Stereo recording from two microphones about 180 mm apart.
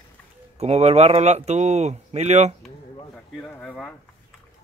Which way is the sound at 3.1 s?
5° left (ahead or behind).